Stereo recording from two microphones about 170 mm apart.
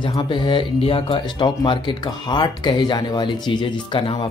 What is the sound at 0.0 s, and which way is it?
Speech, 30° left (ahead or behind).